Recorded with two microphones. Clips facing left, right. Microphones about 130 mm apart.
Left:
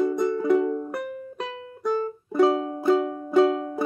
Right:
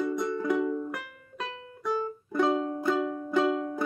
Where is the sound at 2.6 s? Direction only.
20° left (ahead or behind).